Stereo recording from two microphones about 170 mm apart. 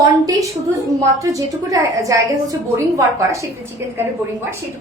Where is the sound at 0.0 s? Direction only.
20° right (ahead or behind).